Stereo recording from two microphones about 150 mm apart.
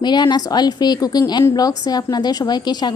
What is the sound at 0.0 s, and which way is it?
A woman's voice, 30° left (ahead or behind).